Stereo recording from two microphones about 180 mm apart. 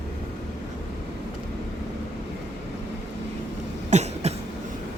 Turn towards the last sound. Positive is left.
turn(degrees=-35)  # may be behind; listen again after turning